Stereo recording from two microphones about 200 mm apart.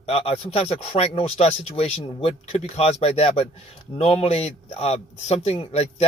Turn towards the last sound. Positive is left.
turn(degrees=30)  # may be behind; listen again after turning